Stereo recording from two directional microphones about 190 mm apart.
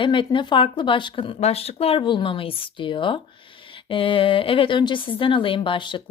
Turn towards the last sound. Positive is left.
turn(degrees=25)  # may be behind; listen again after turning